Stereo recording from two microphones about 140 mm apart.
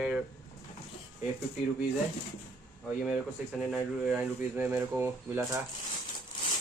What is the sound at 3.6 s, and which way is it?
Speech, 5° right (ahead or behind).